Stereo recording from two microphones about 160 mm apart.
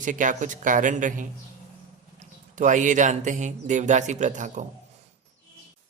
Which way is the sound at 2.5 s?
50° right (ahead or behind).